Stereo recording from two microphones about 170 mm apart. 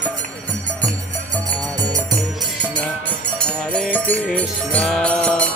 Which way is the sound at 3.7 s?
10° left (ahead or behind).